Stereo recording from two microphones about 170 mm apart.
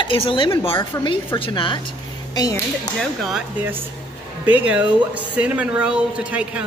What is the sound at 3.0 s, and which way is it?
Speech, centre (ahead or behind).